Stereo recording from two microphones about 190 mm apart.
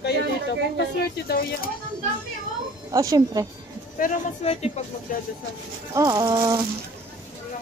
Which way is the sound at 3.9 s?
40° left (ahead or behind).